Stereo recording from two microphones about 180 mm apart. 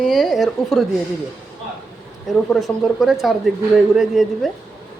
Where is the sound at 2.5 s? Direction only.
Centre (ahead or behind).